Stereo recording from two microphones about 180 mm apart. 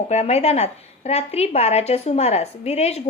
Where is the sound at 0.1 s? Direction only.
35° left (ahead or behind).